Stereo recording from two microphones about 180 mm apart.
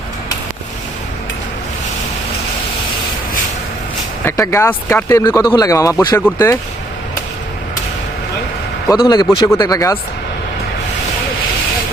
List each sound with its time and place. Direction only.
4.3 s speech: 15° left (ahead or behind)
8.9 s speech: 20° left (ahead or behind)